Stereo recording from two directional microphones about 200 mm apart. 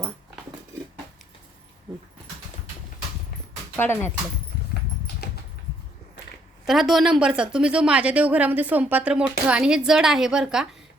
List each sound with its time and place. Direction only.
3.8 s speech: 10° left (ahead or behind)
6.7 s a woman's voice: centre (ahead or behind)